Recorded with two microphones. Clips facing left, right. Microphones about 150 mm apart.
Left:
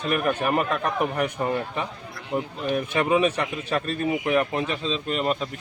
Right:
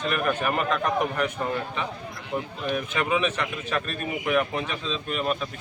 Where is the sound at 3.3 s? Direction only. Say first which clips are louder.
Left 2 dB; 15° left (ahead or behind).